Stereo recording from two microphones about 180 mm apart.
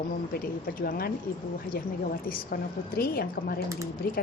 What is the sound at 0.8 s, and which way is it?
Speech, 55° left (ahead or behind).